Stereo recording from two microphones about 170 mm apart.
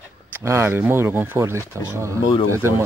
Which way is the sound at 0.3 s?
15° right (ahead or behind).